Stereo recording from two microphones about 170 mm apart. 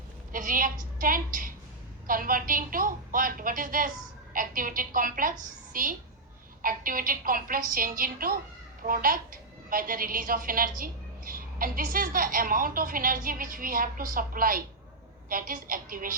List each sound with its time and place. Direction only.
0.3 s a woman's voice: 55° right (ahead or behind)